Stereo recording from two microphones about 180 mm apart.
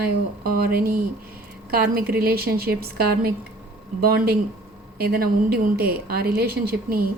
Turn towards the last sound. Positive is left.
turn(degrees=-55)  # may be behind; listen again after turning